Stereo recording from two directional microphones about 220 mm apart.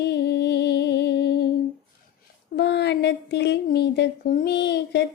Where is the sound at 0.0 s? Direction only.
50° left (ahead or behind).